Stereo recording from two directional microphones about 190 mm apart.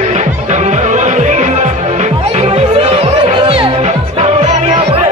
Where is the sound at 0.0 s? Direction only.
40° right (ahead or behind).